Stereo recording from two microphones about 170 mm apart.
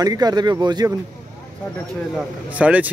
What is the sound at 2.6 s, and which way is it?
Speech, 10° right (ahead or behind).